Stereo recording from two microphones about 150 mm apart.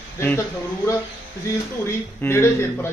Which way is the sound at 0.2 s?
15° left (ahead or behind).